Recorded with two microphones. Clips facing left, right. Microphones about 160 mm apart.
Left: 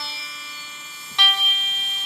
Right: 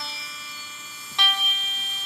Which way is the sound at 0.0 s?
70° left (ahead or behind).